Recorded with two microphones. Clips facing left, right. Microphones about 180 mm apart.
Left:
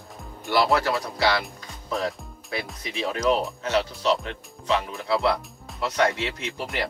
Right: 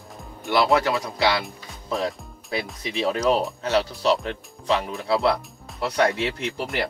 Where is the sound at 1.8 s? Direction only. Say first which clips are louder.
Right 2 dB; 30° right (ahead or behind).